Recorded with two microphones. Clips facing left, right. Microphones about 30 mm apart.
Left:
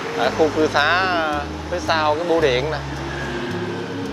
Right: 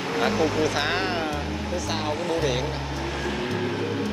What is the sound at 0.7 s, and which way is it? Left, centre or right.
Speech, left.